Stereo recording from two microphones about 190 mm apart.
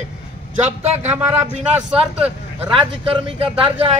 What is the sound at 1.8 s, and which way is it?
Speech, 5° right (ahead or behind).